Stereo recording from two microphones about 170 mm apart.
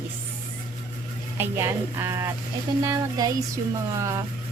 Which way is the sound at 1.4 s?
15° right (ahead or behind).